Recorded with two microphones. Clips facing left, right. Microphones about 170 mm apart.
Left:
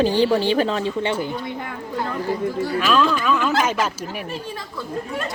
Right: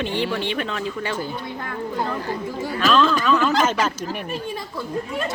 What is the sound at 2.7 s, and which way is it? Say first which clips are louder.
Speech: right 2 dB; 10° left (ahead or behind).